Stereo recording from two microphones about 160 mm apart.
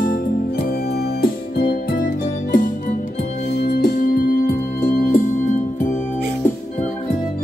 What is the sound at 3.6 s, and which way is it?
Organ, 85° left.